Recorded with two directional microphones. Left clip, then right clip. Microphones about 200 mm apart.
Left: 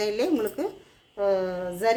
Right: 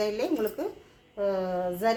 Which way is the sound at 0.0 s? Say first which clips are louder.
Left 3 dB; 40° left (ahead or behind).